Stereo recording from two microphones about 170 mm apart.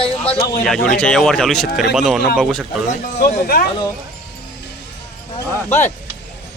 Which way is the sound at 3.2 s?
55° left (ahead or behind).